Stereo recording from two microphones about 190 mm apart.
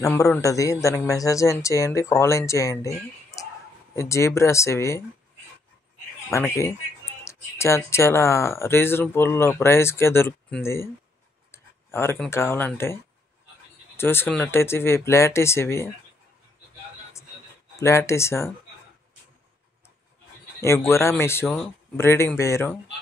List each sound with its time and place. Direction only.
0.0 s speech: 15° left (ahead or behind)
3.9 s speech: 15° left (ahead or behind)
6.3 s speech: 15° left (ahead or behind)
17.7 s speech: 15° left (ahead or behind)
20.6 s speech: 15° left (ahead or behind)